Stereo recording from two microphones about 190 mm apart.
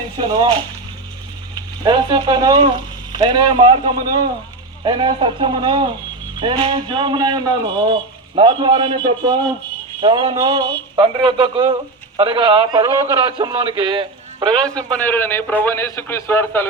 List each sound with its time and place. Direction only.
0.2 s speech: 25° right (ahead or behind)
1.8 s speech: 25° right (ahead or behind)
14.8 s a man's voice: 10° left (ahead or behind)